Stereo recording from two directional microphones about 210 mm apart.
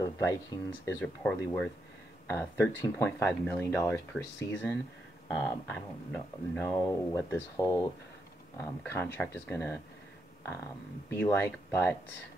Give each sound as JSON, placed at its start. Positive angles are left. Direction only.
{"t": 0.0, "sound": "speech", "side_deg": 15}
{"t": 11.1, "sound": "speech", "side_deg": 15}